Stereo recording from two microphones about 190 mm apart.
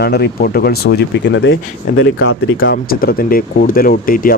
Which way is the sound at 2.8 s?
50° left (ahead or behind).